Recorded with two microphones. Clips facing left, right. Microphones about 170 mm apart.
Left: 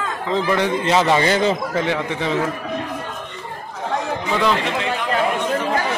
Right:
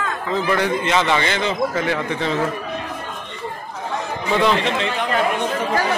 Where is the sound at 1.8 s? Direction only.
20° left (ahead or behind).